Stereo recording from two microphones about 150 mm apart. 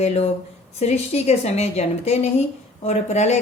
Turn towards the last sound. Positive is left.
turn(degrees=50)  # may be behind; listen again after turning